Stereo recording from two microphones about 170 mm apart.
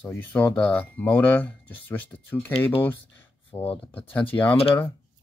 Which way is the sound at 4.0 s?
10° left (ahead or behind).